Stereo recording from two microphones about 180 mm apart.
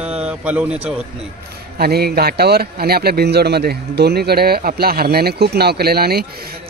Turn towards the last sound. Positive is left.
turn(degrees=-60)  # may be behind; listen again after turning